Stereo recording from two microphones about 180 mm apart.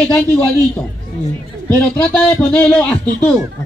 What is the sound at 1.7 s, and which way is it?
Speech, 5° left (ahead or behind).